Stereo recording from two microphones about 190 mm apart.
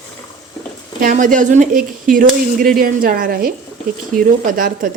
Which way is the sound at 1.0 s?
45° right (ahead or behind).